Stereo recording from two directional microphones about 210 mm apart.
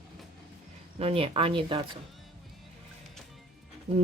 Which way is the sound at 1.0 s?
25° right (ahead or behind).